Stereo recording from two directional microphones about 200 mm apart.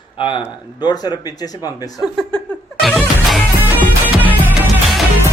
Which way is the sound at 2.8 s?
Centre (ahead or behind).